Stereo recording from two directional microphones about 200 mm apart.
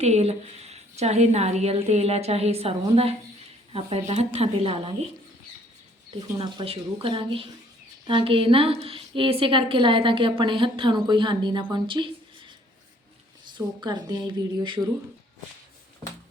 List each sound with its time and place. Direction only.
0.0 s a woman's voice: 30° right (ahead or behind)
6.1 s a woman's voice: 20° right (ahead or behind)
11.7 s a sound: 25° right (ahead or behind)
13.5 s a woman's voice: 20° right (ahead or behind)